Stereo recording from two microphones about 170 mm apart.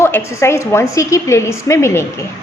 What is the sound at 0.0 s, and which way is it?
A woman's voice, 15° left (ahead or behind).